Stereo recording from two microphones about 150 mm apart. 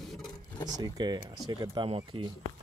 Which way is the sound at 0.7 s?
25° right (ahead or behind).